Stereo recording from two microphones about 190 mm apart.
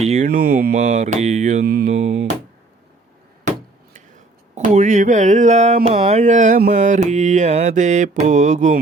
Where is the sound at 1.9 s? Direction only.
35° right (ahead or behind).